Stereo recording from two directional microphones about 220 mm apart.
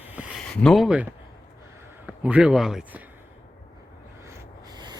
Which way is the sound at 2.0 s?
5° right (ahead or behind).